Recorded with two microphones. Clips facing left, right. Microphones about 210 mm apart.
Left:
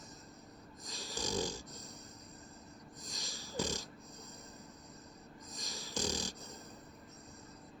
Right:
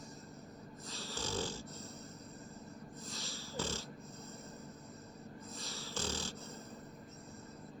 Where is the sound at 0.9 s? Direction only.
15° left (ahead or behind).